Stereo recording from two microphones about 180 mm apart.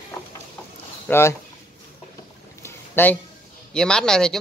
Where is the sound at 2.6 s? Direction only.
10° left (ahead or behind).